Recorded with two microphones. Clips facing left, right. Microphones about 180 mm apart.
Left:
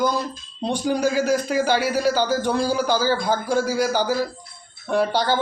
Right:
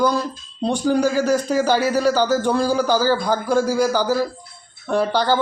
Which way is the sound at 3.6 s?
15° left (ahead or behind).